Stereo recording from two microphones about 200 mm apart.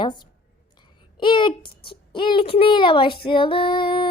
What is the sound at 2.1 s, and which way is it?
Female singing, 25° left (ahead or behind).